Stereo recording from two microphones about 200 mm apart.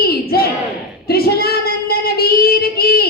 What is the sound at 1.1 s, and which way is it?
Female singing, 50° left (ahead or behind).